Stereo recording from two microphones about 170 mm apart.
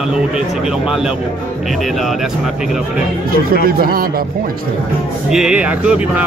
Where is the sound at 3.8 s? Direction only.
60° right (ahead or behind).